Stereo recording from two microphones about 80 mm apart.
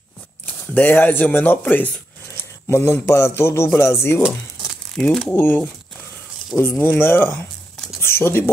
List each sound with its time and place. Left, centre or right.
0.5 s speech: left
4.9 s speech: centre
5.3 s speech: left